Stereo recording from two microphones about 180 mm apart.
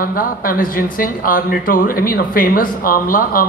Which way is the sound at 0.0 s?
55° left (ahead or behind).